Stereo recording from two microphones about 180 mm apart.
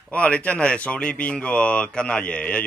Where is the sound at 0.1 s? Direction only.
5° left (ahead or behind).